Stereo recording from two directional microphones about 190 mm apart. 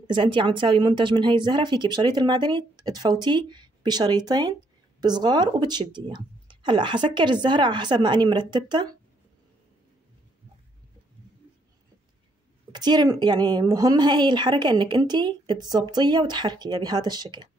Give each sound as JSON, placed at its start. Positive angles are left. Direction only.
{"t": 0.0, "sound": "a woman's voice", "side_deg": -25}
{"t": 12.7, "sound": "a woman's voice", "side_deg": -20}